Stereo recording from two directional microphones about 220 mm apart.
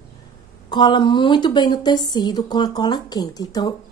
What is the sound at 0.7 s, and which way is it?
A woman's voice, 20° left (ahead or behind).